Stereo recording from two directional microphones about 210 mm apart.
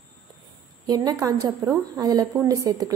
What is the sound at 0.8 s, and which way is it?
A woman's voice, 15° right (ahead or behind).